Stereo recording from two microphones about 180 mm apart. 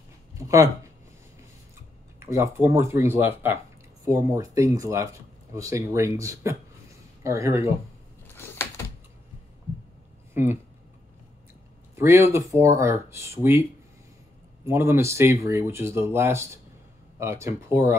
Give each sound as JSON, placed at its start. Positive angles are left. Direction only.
{"t": 0.3, "sound": "a sound", "side_deg": -15}
{"t": 2.3, "sound": "speech", "side_deg": -15}
{"t": 8.4, "sound": "door", "side_deg": 15}
{"t": 10.3, "sound": "speech", "side_deg": -15}
{"t": 11.9, "sound": "speech", "side_deg": -15}
{"t": 14.7, "sound": "speech", "side_deg": -15}